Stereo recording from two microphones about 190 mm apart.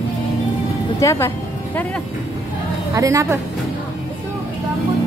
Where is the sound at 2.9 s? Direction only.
15° right (ahead or behind).